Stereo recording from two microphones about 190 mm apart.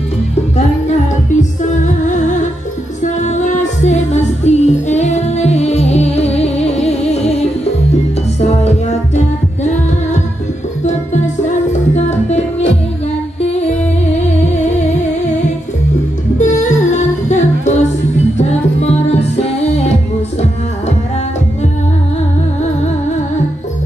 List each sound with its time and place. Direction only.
1.4 s music: 40° left (ahead or behind)
11.4 s music: 35° left (ahead or behind)
16.3 s music: 40° left (ahead or behind)